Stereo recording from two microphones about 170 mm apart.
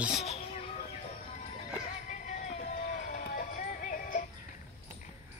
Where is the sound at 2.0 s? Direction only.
45° left (ahead or behind).